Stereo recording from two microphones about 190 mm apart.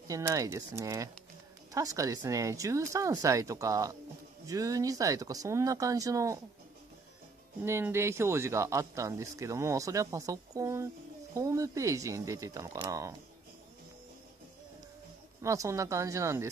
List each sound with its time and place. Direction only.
0.1 s speech: 15° right (ahead or behind)
7.6 s speech: 10° right (ahead or behind)
15.4 s speech: 15° right (ahead or behind)